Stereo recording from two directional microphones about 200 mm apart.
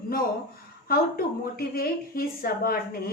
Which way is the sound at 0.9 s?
50° left (ahead or behind).